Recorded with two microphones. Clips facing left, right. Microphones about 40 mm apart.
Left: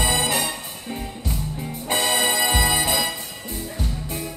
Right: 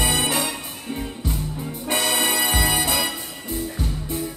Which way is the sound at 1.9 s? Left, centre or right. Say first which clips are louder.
Left 1 dB; left.